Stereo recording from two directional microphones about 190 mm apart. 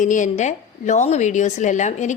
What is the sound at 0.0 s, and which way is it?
Speech, 40° left (ahead or behind).